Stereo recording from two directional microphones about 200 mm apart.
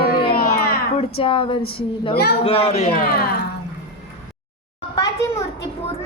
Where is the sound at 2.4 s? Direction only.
30° left (ahead or behind); by 3.2 s 45° left (ahead or behind).